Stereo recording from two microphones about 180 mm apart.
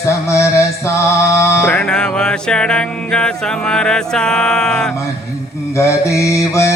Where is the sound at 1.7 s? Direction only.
5° left (ahead or behind).